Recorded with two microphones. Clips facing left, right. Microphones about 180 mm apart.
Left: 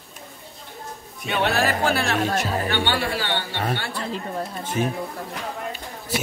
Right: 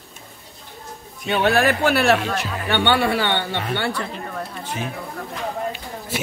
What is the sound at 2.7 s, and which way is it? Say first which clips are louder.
Speech: right 5 dB; 65° right (ahead or behind).